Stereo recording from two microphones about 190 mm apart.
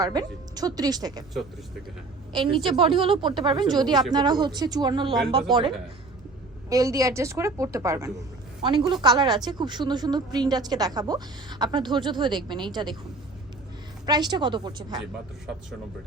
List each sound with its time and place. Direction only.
0.0 s a woman's voice: 20° right (ahead or behind)
2.3 s a woman's voice: 25° right (ahead or behind)
6.7 s a woman's voice: 20° right (ahead or behind)
14.0 s a woman's voice: 20° right (ahead or behind)